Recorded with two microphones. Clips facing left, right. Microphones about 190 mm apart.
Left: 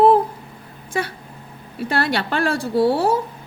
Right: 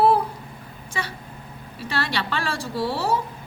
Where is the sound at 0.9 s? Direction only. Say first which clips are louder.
Left 7 dB; 55° left (ahead or behind).